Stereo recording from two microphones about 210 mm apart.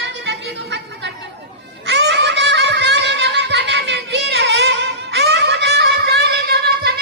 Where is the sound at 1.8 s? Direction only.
55° right (ahead or behind).